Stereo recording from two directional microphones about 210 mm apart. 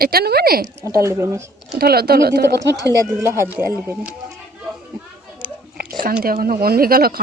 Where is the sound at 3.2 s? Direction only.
15° right (ahead or behind).